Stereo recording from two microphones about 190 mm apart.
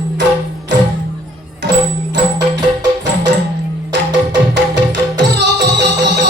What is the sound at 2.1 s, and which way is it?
Music, 65° right (ahead or behind).